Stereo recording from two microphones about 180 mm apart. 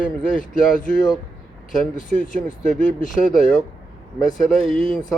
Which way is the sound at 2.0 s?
45° left (ahead or behind).